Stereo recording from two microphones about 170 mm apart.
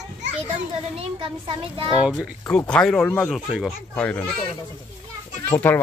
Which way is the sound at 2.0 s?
5° right (ahead or behind).